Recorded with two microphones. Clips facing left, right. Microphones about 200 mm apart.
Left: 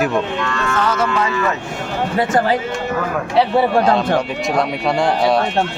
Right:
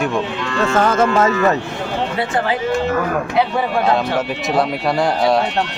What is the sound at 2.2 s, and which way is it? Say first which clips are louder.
Speech: left 6 dB; 40° left (ahead or behind).